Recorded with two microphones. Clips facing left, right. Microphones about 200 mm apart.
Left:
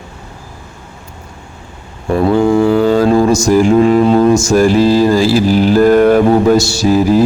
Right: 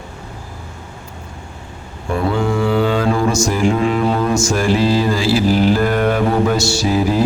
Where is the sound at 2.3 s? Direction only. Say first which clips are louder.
Left 8 dB; 40° left (ahead or behind).